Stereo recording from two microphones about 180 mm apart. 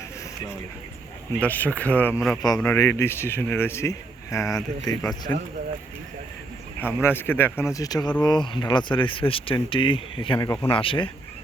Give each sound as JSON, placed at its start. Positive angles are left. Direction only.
{"t": 1.4, "sound": "a man's voice", "side_deg": 10}
{"t": 2.6, "sound": "speech", "side_deg": 15}
{"t": 6.7, "sound": "speech", "side_deg": 10}